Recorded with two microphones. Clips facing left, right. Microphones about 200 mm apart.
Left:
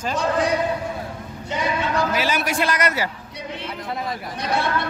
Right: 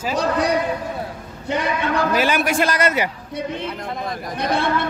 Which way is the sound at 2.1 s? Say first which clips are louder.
Right 4 dB; 50° right (ahead or behind).